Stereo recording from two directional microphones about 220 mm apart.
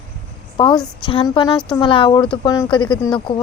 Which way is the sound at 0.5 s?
20° left (ahead or behind).